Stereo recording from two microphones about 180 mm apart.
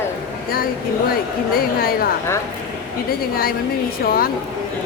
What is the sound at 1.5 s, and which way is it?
Speech, 55° left (ahead or behind).